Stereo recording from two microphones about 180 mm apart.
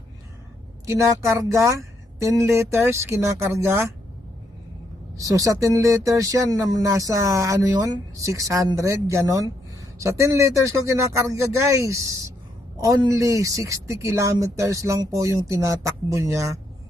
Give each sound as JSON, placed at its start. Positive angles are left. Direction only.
{"t": 0.9, "sound": "speech", "side_deg": -15}
{"t": 5.1, "sound": "speech", "side_deg": -20}